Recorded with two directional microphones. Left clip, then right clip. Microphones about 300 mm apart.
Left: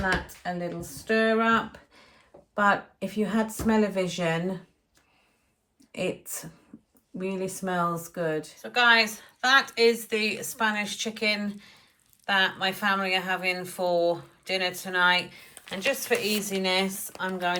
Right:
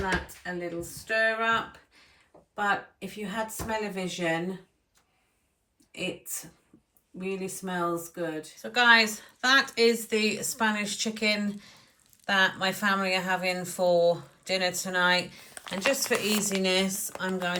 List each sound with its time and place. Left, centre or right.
1.0 s speech: left
2.6 s speech: left
5.9 s speech: left
8.6 s a woman's voice: centre